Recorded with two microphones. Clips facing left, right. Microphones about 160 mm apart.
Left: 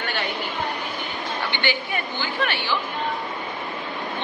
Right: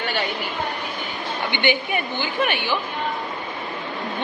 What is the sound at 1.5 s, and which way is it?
A man's voice, 20° right (ahead or behind).